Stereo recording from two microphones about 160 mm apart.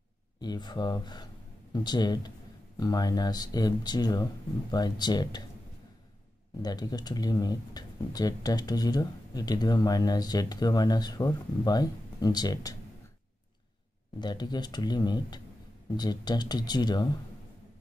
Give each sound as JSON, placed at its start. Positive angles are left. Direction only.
{"t": 0.4, "sound": "speech", "side_deg": 25}
{"t": 6.6, "sound": "speech", "side_deg": 25}
{"t": 14.2, "sound": "speech", "side_deg": 25}